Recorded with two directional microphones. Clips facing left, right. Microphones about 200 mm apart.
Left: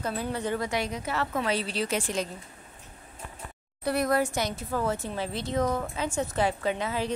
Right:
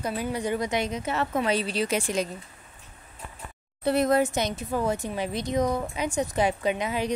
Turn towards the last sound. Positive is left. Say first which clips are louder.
# right 2 dB
turn(degrees=-15)  # may be behind; listen again after turning